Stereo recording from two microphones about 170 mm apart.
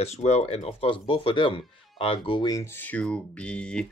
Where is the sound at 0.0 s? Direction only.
40° left (ahead or behind).